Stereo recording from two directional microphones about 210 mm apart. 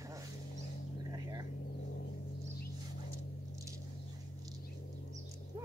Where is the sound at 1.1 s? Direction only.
15° right (ahead or behind).